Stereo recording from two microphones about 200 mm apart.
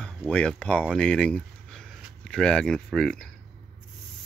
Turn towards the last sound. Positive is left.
turn(degrees=5)  # may be behind; listen again after turning